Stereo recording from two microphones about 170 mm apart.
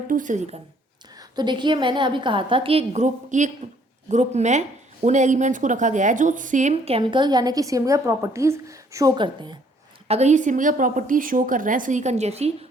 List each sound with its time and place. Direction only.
0.1 s a woman's voice: 50° right (ahead or behind)
1.2 s a woman's voice: 25° right (ahead or behind)
10.1 s a woman's voice: 40° right (ahead or behind)